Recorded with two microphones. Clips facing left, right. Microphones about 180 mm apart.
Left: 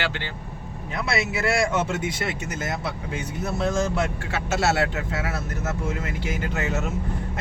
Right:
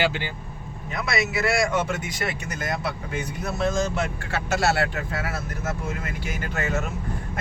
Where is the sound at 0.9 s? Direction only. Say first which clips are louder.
Even; 30° left (ahead or behind).